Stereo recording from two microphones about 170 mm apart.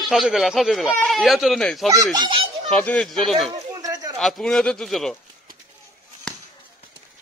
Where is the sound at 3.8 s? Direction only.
20° right (ahead or behind).